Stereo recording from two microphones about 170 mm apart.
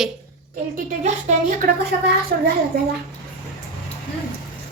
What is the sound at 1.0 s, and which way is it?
A woman's voice, 55° right (ahead or behind).